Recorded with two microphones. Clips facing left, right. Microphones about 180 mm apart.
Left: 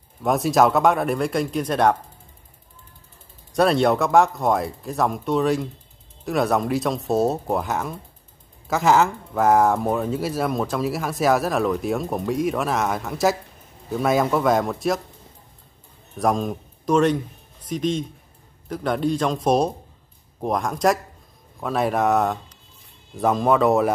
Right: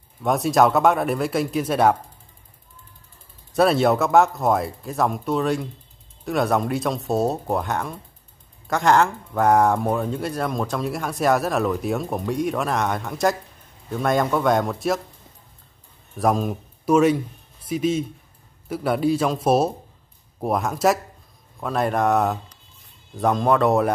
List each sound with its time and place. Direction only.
0.2 s speech: centre (ahead or behind)
3.5 s speech: centre (ahead or behind)
16.2 s a man's voice: 5° right (ahead or behind)